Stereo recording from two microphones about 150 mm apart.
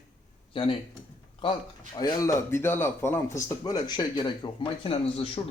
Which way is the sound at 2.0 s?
25° left (ahead or behind).